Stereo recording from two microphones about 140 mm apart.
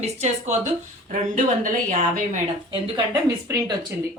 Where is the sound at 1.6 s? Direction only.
65° right (ahead or behind).